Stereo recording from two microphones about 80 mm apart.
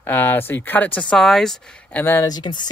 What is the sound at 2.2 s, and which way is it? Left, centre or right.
Speech, left.